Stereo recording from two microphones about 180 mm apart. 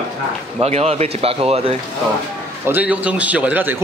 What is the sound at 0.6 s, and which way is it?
A man's voice, 35° right (ahead or behind).